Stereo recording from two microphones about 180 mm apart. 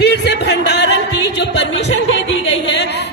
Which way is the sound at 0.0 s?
70° left (ahead or behind).